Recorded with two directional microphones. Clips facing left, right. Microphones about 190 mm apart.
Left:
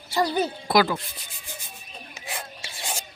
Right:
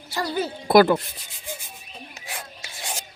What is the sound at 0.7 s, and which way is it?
Speech, 55° right (ahead or behind).